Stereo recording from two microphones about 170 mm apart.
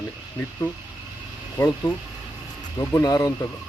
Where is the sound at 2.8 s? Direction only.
20° left (ahead or behind).